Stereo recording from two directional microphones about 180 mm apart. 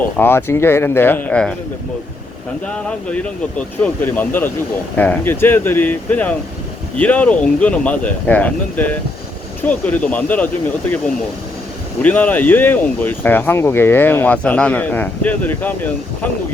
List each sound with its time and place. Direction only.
0.2 s speech: 10° left (ahead or behind)
3.1 s speech: 5° left (ahead or behind)
12.0 s speech: 10° left (ahead or behind)